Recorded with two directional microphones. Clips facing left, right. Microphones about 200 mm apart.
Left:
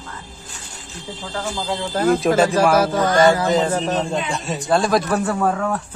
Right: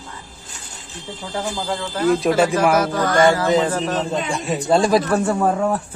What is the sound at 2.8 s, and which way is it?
Music, 25° left (ahead or behind).